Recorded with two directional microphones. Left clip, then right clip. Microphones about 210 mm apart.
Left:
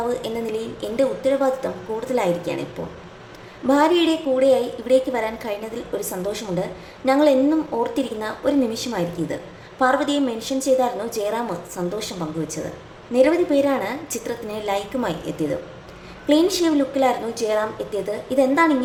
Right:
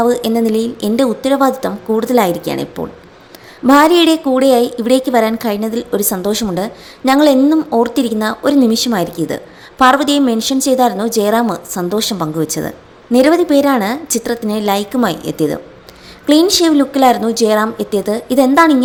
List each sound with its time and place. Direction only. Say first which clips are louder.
0.1 s a woman's voice: right 10 dB; 40° right (ahead or behind)
3.7 s a woman's voice: right 9 dB; 40° right (ahead or behind)